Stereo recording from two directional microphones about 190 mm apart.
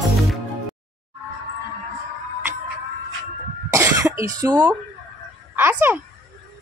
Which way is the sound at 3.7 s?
15° right (ahead or behind).